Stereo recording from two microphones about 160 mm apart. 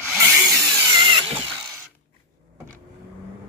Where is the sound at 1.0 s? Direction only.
30° right (ahead or behind).